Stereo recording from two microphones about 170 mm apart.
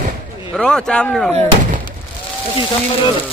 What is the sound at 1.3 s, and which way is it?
Speech, 40° right (ahead or behind).